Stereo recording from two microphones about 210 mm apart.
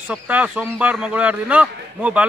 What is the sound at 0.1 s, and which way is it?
A man's voice, 5° right (ahead or behind).